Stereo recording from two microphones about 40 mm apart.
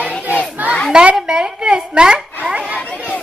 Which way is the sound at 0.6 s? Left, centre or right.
Right.